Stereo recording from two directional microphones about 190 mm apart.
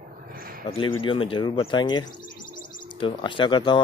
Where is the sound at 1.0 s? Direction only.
25° left (ahead or behind).